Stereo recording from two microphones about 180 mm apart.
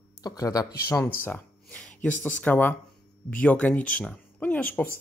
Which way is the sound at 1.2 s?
10° left (ahead or behind).